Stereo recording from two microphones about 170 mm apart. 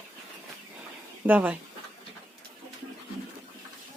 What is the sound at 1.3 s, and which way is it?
Speech, 10° right (ahead or behind).